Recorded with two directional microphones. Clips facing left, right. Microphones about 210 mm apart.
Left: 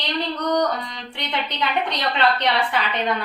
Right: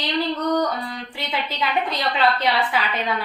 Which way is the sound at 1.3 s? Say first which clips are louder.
Even; 5° right (ahead or behind).